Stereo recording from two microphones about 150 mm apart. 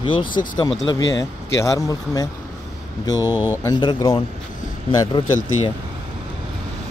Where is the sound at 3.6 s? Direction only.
30° left (ahead or behind).